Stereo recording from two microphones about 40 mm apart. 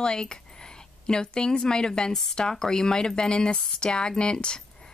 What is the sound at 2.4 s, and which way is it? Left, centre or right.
Speech, centre.